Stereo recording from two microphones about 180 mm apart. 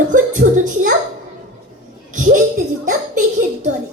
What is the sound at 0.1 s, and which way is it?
Music, 45° right (ahead or behind).